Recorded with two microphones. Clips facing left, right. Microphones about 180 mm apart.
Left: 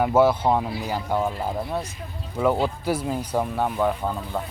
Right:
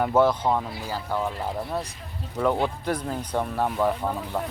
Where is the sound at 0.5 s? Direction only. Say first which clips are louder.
Left 3 dB; 20° left (ahead or behind).